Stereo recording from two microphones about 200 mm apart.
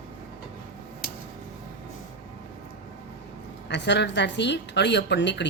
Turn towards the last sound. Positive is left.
turn(degrees=60)  # may be behind; listen again after turning